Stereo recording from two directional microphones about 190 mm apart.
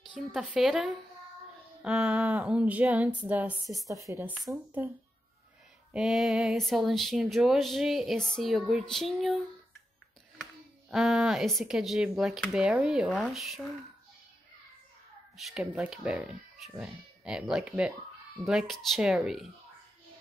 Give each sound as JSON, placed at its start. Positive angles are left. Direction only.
{"t": 0.1, "sound": "speech", "side_deg": -5}
{"t": 3.9, "sound": "speech", "side_deg": -15}
{"t": 5.9, "sound": "speech", "side_deg": 0}
{"t": 15.3, "sound": "speech", "side_deg": -5}